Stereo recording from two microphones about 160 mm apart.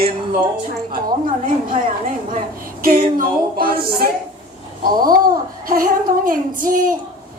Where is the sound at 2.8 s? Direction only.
60° right (ahead or behind).